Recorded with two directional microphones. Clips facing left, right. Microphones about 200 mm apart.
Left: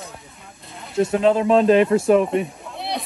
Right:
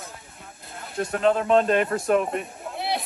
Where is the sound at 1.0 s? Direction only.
5° left (ahead or behind).